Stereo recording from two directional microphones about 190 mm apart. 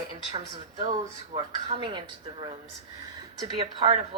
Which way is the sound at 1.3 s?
25° right (ahead or behind).